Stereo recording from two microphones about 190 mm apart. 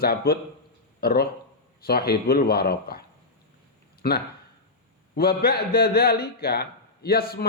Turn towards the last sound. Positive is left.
turn(degrees=55)  # may be behind; listen again after turning